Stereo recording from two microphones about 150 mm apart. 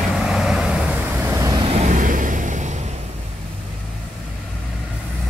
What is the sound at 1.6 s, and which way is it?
Vehicle, 50° right (ahead or behind).